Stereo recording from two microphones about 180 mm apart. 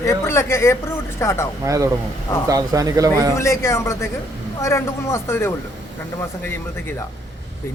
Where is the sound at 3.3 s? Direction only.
15° left (ahead or behind).